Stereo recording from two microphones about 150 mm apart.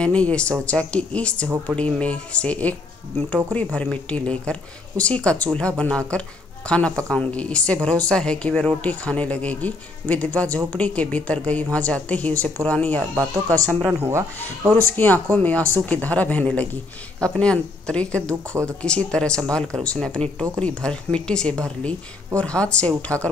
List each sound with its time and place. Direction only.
0.0 s a woman's voice: 5° left (ahead or behind)
13.8 s speech: 15° right (ahead or behind)
15.0 s a woman's voice: 10° left (ahead or behind)